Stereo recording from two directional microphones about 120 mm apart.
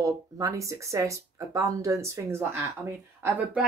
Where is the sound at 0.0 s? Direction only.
25° right (ahead or behind).